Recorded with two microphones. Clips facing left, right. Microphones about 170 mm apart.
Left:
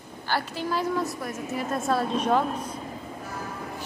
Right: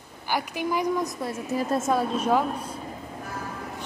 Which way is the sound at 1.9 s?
10° right (ahead or behind).